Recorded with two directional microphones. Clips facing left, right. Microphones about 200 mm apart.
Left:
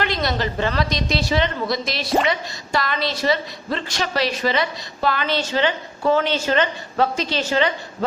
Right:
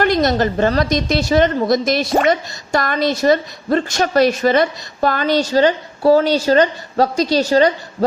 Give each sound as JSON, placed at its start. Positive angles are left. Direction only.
{"t": 0.0, "sound": "a woman's voice", "side_deg": -45}